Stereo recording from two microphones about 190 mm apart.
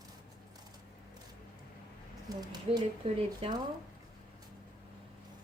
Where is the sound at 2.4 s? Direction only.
20° right (ahead or behind).